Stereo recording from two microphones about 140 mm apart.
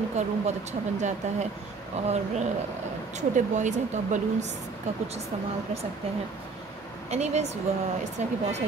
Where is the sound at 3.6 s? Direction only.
60° right (ahead or behind).